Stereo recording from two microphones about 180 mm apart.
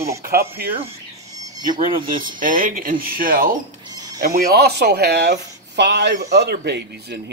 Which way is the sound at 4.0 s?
20° right (ahead or behind).